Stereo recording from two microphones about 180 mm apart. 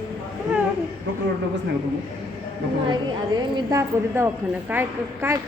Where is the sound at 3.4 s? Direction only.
20° right (ahead or behind).